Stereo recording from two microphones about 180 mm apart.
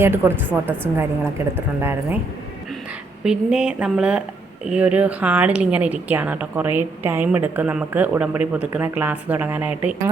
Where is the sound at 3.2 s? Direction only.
5° right (ahead or behind).